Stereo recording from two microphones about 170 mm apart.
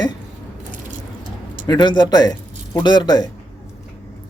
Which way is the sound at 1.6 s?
25° left (ahead or behind).